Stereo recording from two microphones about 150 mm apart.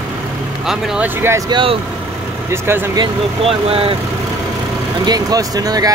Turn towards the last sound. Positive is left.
turn(degrees=-25)  # may be behind; listen again after turning